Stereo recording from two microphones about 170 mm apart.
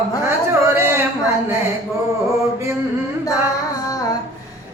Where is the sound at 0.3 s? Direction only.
15° right (ahead or behind).